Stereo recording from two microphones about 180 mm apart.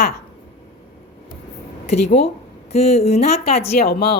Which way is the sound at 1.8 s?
35° left (ahead or behind).